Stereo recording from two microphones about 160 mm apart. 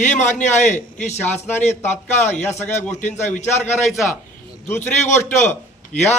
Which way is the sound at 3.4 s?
45° left (ahead or behind).